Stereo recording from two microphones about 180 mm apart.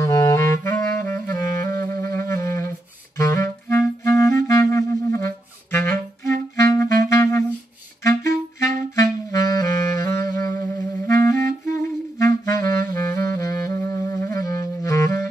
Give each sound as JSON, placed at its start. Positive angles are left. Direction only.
{"t": 0.0, "sound": "clarinet", "side_deg": 15}
{"t": 7.1, "sound": "wind instrument", "side_deg": 15}
{"t": 8.0, "sound": "clarinet", "side_deg": 15}
{"t": 9.0, "sound": "music", "side_deg": 20}
{"t": 11.1, "sound": "clarinet", "side_deg": 15}